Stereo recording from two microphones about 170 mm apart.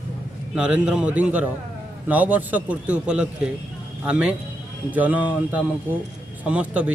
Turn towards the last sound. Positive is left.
turn(degrees=-5)  # may be behind; listen again after turning